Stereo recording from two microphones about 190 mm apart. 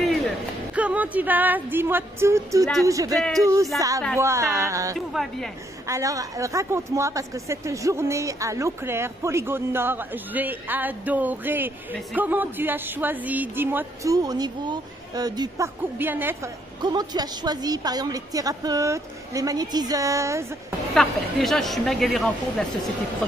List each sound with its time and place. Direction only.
0.0 s music: centre (ahead or behind)
0.7 s speech: 10° right (ahead or behind)
4.9 s a woman's voice: centre (ahead or behind)
5.9 s speech: 15° right (ahead or behind)
16.8 s a woman's voice: 20° right (ahead or behind)
20.9 s a woman's voice: centre (ahead or behind)